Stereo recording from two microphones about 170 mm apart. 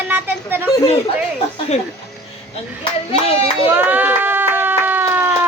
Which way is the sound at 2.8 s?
35° left (ahead or behind).